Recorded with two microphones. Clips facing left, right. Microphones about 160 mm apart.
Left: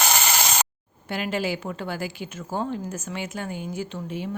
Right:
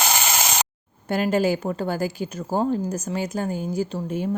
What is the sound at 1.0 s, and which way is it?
A woman's voice, 45° right (ahead or behind).